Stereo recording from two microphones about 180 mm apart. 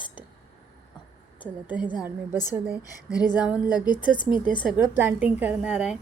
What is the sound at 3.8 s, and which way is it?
Speech, 25° left (ahead or behind).